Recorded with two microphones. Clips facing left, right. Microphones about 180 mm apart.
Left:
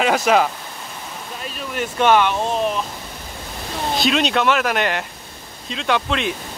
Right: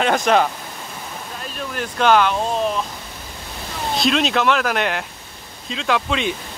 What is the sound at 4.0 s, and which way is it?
Speech, centre (ahead or behind).